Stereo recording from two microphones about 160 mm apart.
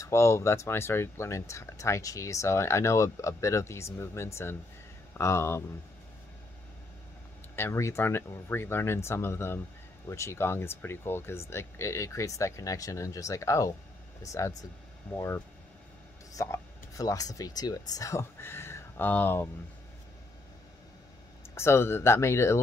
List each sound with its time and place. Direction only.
0.0 s speech: 15° left (ahead or behind)
7.5 s speech: 15° left (ahead or behind)
21.5 s speech: 15° left (ahead or behind)